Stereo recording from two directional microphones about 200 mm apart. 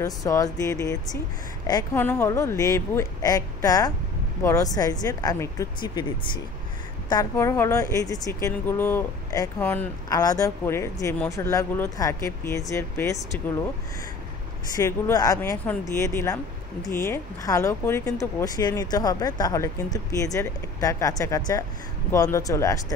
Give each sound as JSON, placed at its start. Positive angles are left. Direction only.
{"t": 0.0, "sound": "speech", "side_deg": 15}
{"t": 14.8, "sound": "speech", "side_deg": 15}